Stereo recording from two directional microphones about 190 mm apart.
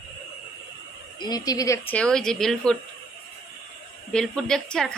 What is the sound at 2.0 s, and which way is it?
Speech, 5° left (ahead or behind).